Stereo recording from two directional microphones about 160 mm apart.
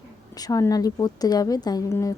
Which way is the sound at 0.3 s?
25° left (ahead or behind).